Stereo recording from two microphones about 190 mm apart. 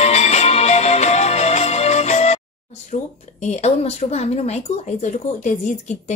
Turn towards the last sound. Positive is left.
turn(degrees=40)  # may be behind; listen again after turning